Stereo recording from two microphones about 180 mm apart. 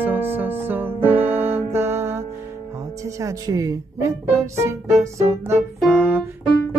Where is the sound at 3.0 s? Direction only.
20° right (ahead or behind).